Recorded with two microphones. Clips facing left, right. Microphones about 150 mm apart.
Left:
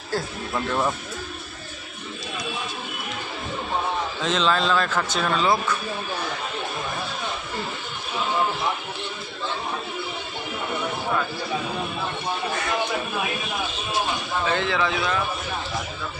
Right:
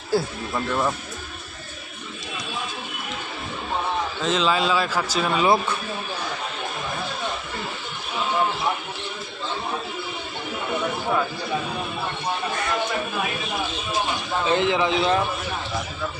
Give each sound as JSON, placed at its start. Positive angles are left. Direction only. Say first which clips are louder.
{"t": 0.1, "sound": "a man's voice", "louder": "right 5 dB", "side_deg": -10}
{"t": 0.5, "sound": "speech", "louder": "even", "side_deg": 5}
{"t": 4.2, "sound": "a man's voice", "louder": "right 1 dB", "side_deg": -5}
{"t": 14.4, "sound": "speech", "louder": "right 4 dB", "side_deg": -20}